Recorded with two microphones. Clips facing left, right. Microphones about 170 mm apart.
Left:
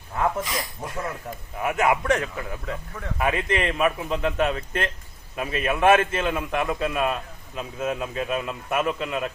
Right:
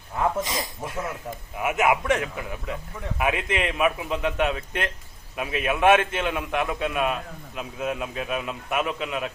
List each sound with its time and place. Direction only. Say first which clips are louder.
0.2 s speech: even; 20° right (ahead or behind)
0.8 s a man's voice: even; centre (ahead or behind)